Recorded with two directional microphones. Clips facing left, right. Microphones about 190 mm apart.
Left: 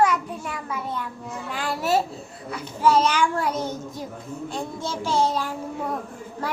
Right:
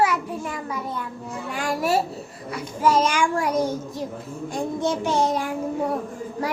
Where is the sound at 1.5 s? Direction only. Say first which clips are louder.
Right 1 dB; 10° right (ahead or behind).